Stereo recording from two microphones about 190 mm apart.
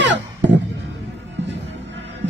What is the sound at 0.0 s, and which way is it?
Music, 70° right (ahead or behind).